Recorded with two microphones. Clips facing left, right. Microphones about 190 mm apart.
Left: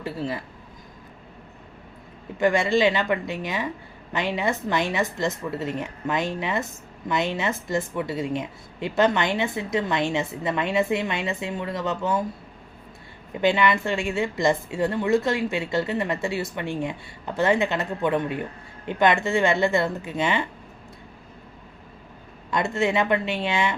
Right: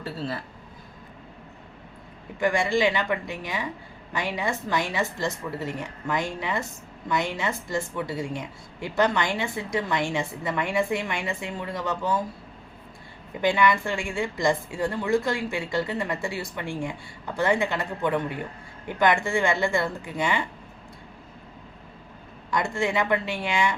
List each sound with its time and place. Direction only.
0.0 s speech: 15° left (ahead or behind)
2.4 s speech: 20° left (ahead or behind)
13.4 s speech: 20° left (ahead or behind)
22.4 s speech: 20° left (ahead or behind)